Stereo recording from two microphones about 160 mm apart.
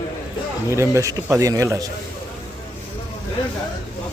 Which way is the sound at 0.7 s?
15° right (ahead or behind).